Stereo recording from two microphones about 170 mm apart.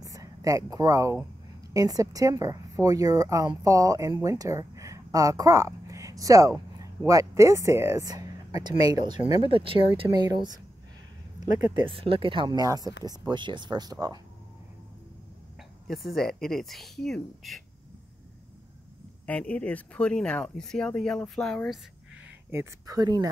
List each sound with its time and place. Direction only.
0.0 s a woman's voice: 20° right (ahead or behind)
15.9 s speech: centre (ahead or behind)
19.2 s speech: 10° left (ahead or behind)
22.5 s speech: 20° right (ahead or behind)